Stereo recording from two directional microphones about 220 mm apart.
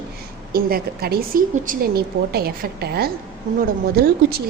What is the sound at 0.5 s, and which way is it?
A woman's voice, 45° right (ahead or behind).